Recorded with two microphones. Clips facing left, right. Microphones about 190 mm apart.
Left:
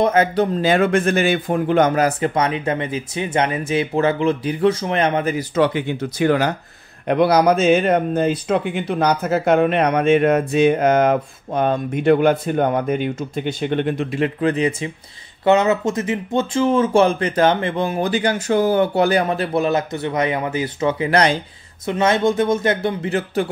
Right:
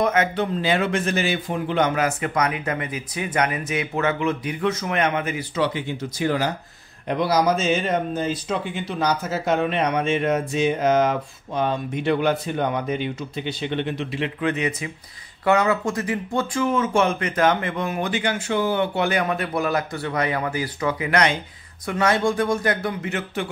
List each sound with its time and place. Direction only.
0.0 s a man's voice: 35° left (ahead or behind)
5.6 s speech: 60° left (ahead or behind); by 21.4 s 35° left (ahead or behind)
21.8 s speech: 20° left (ahead or behind)